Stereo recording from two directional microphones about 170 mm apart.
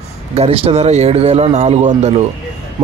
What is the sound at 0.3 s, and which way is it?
Speech, 35° right (ahead or behind).